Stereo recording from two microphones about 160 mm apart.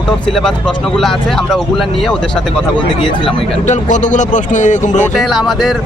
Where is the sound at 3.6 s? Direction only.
50° left (ahead or behind).